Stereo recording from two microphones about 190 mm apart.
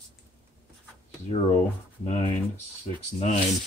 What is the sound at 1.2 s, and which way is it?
Speech, 30° left (ahead or behind).